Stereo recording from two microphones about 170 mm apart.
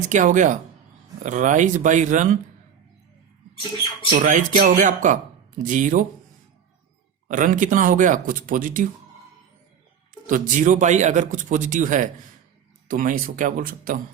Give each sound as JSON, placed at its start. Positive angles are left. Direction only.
{"t": 0.1, "sound": "a man's voice", "side_deg": -50}
{"t": 4.1, "sound": "a man's voice", "side_deg": -50}
{"t": 7.3, "sound": "a man's voice", "side_deg": -50}
{"t": 10.2, "sound": "a man's voice", "side_deg": -50}